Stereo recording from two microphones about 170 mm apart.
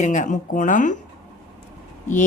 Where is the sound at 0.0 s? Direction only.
45° left (ahead or behind).